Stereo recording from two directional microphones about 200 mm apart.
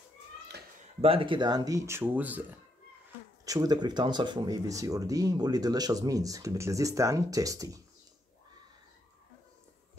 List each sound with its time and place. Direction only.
1.0 s speech: 25° right (ahead or behind); by 2.4 s 10° right (ahead or behind)
3.4 s speech: 20° right (ahead or behind)